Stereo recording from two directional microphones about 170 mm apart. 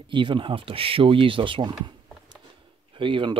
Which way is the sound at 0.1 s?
30° right (ahead or behind).